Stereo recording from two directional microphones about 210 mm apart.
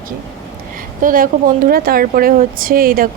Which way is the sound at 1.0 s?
40° right (ahead or behind).